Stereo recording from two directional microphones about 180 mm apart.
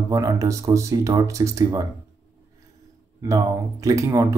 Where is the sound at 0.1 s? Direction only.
15° right (ahead or behind).